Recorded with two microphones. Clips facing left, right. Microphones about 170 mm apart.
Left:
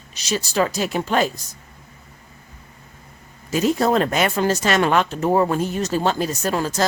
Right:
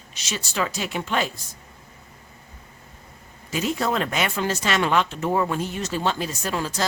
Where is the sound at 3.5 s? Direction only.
40° left (ahead or behind).